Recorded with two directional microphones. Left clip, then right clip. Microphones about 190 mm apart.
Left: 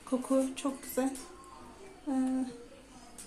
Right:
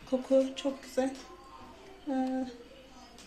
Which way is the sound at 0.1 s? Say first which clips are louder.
Right 2 dB; 60° left (ahead or behind).